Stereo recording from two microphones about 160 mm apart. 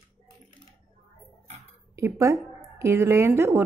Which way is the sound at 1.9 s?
20° right (ahead or behind).